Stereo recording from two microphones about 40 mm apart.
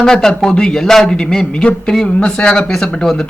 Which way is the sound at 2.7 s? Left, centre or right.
Centre.